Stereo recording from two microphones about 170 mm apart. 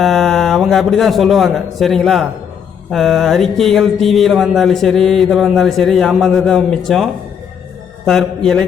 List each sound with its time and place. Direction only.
0.0 s a man's voice: centre (ahead or behind)